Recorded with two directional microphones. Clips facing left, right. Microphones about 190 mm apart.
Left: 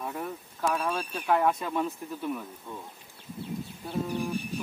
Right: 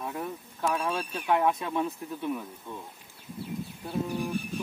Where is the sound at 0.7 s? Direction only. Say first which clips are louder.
Even; 5° right (ahead or behind).